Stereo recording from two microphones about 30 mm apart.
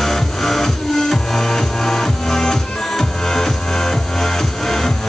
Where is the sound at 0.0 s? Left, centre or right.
Centre.